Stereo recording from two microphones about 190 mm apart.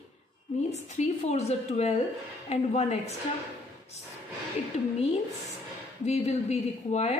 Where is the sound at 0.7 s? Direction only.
35° left (ahead or behind).